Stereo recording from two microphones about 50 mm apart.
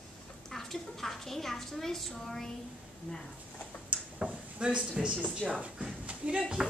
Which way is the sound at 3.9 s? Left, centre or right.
Right.